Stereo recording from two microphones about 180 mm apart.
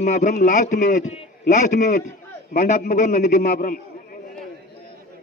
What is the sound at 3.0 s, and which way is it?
Speech, 40° left (ahead or behind).